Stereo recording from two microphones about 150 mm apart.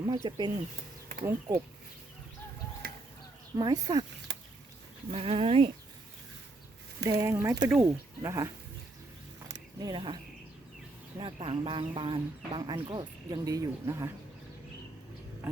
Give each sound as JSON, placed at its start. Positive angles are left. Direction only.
{"t": 0.0, "sound": "speech", "side_deg": -30}
{"t": 1.2, "sound": "speech", "side_deg": -20}
{"t": 2.8, "sound": "a sound", "side_deg": -80}
{"t": 3.6, "sound": "speech", "side_deg": -25}
{"t": 5.1, "sound": "speech", "side_deg": -40}
{"t": 7.0, "sound": "speech", "side_deg": -20}
{"t": 9.8, "sound": "speech", "side_deg": -30}
{"t": 11.2, "sound": "speech", "side_deg": -35}